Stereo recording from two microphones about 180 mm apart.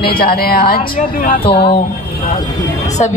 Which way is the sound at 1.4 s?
30° left (ahead or behind).